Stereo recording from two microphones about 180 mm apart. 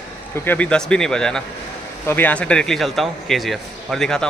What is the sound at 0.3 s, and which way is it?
Speech, 10° left (ahead or behind).